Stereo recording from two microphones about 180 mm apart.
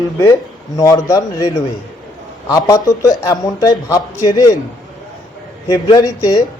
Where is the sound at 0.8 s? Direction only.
20° left (ahead or behind).